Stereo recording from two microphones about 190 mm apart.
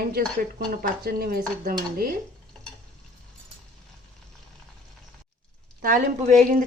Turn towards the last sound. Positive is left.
turn(degrees=-40)  # may be behind; listen again after turning